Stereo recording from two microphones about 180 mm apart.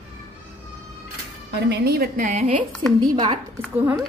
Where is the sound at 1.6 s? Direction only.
65° right (ahead or behind); by 2.7 s 45° right (ahead or behind).